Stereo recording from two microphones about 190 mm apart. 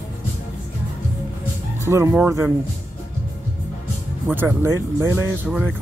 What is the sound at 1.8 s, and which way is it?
Music, 15° right (ahead or behind).